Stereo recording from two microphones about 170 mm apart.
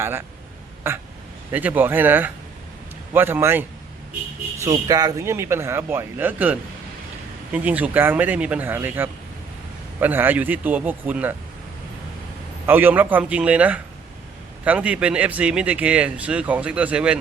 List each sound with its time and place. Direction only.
0.0 s a man's voice: 15° right (ahead or behind)
1.5 s a man's voice: 10° right (ahead or behind)
12.6 s a man's voice: 10° right (ahead or behind)